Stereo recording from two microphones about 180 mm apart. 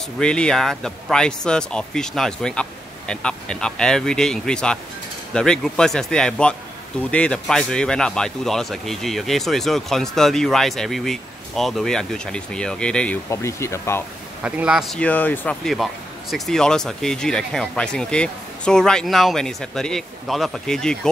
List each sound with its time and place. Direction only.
0.2 s speech: 5° left (ahead or behind)
14.4 s speech: 5° right (ahead or behind)